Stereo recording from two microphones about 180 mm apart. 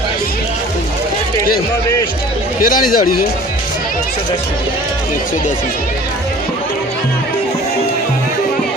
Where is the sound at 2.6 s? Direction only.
50° left (ahead or behind).